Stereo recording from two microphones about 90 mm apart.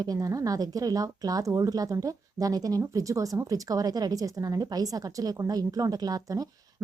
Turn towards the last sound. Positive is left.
turn(degrees=-45)  # may be behind; listen again after turning